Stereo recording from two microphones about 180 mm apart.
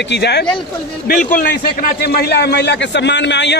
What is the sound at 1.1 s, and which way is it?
A man's voice, 55° left (ahead or behind).